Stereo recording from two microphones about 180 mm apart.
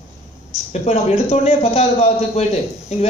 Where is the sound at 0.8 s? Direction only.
35° left (ahead or behind).